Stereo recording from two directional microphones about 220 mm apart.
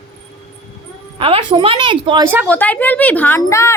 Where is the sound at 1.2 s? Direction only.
25° right (ahead or behind).